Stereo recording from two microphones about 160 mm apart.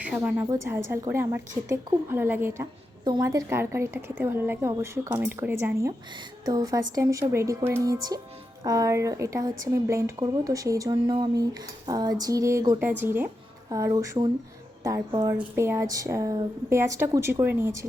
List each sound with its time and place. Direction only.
0.2 s a woman's voice: 15° right (ahead or behind)